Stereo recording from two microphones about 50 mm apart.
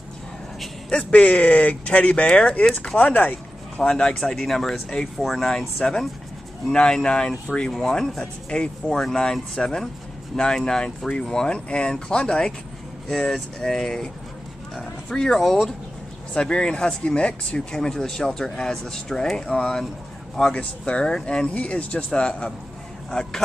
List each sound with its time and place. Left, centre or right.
1.1 s speech: left
3.0 s speech: left
3.9 s speech: left
4.2 s speech: centre
5.8 s speech: centre
8.5 s speech: centre
16.3 s speech: centre